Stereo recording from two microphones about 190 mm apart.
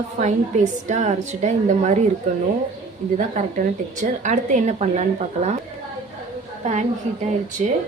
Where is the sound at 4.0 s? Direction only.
40° right (ahead or behind).